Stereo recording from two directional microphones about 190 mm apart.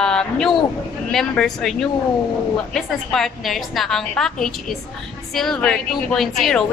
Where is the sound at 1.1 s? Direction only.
Centre (ahead or behind).